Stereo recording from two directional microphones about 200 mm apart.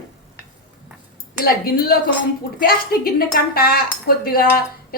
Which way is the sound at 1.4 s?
50° left (ahead or behind).